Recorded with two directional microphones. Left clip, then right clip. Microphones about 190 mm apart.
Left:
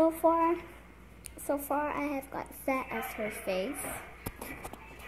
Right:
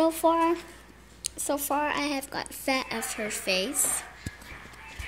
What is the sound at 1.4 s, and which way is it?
Speech, 40° right (ahead or behind).